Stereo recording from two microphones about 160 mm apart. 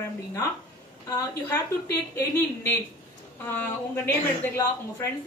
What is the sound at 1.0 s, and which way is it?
A woman's voice, 20° left (ahead or behind).